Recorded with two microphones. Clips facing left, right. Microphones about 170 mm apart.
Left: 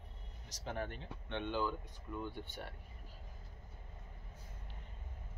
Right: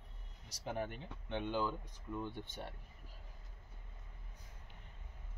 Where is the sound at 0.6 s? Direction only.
10° right (ahead or behind).